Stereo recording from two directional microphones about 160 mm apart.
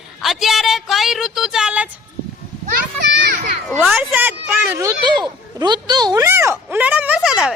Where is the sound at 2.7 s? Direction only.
90° right.